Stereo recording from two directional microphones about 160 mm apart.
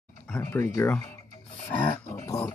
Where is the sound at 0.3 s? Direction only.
15° left (ahead or behind).